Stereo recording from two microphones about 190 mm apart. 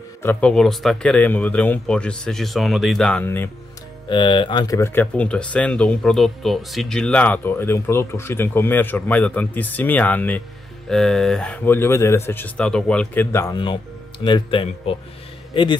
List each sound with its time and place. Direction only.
0.2 s speech: 10° left (ahead or behind)
4.1 s speech: 25° left (ahead or behind)
14.2 s a man's voice: 25° left (ahead or behind)